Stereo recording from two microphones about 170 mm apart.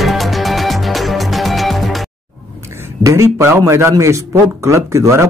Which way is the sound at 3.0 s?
15° right (ahead or behind).